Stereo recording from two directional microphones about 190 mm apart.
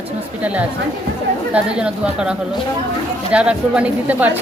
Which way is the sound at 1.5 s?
5° right (ahead or behind).